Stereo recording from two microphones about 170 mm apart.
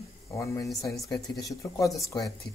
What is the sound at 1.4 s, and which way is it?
Speech, 20° left (ahead or behind).